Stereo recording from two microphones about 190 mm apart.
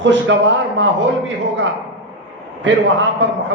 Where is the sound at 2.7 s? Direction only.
75° right (ahead or behind).